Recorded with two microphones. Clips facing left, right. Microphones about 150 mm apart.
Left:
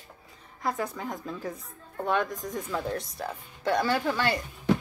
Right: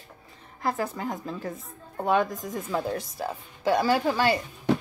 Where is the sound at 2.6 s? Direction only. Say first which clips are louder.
Right 4 dB; 30° right (ahead or behind).